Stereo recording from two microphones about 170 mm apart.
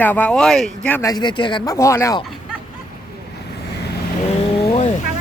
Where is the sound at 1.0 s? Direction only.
25° left (ahead or behind).